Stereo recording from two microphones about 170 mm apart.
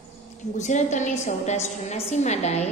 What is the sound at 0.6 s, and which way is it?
A woman's voice, 45° left (ahead or behind).